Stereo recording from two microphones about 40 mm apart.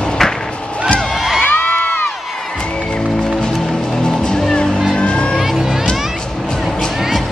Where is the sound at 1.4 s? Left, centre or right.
Left.